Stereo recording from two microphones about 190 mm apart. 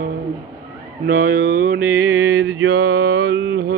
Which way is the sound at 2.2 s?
60° right (ahead or behind).